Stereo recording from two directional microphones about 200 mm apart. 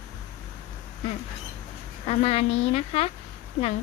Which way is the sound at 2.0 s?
30° left (ahead or behind).